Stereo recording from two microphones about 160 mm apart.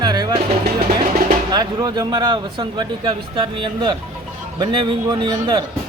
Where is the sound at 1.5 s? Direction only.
25° right (ahead or behind).